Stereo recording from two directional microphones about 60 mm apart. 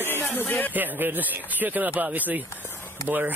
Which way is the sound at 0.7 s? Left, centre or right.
Right.